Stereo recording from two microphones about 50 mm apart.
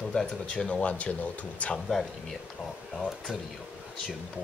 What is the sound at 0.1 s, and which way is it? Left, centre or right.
Speech, left.